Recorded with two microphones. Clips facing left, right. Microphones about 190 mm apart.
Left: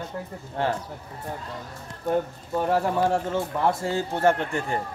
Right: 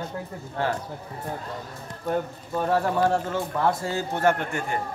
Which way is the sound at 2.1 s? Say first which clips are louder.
Left 2 dB; 15° left (ahead or behind).